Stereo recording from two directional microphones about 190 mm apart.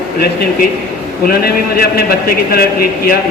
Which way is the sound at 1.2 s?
50° left (ahead or behind).